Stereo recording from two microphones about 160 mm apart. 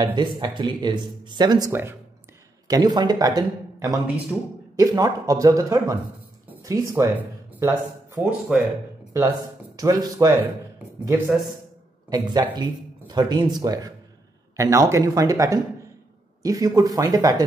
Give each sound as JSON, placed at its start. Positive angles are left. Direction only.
{"t": 0.0, "sound": "speech", "side_deg": -30}
{"t": 1.7, "sound": "speech", "side_deg": -15}
{"t": 2.7, "sound": "speech", "side_deg": -25}
{"t": 9.8, "sound": "speech", "side_deg": -20}
{"t": 12.1, "sound": "speech", "side_deg": -25}